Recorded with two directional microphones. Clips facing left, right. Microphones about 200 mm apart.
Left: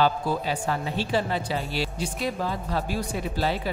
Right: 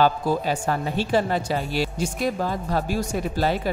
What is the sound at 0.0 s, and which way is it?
Speech, 45° right (ahead or behind).